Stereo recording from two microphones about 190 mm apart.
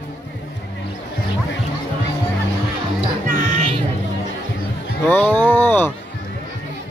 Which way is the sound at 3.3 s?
30° right (ahead or behind).